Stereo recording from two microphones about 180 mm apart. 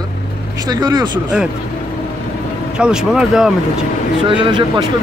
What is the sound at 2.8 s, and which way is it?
Speech, 5° right (ahead or behind).